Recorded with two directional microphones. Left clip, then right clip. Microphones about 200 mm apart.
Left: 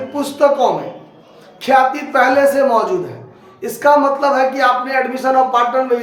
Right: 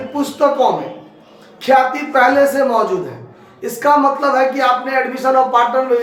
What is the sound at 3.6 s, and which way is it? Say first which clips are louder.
Speech: left 1 dB; 25° left (ahead or behind).